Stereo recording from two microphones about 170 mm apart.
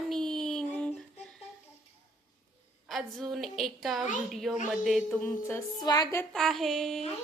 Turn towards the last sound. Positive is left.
turn(degrees=0)  # may be behind; listen again after turning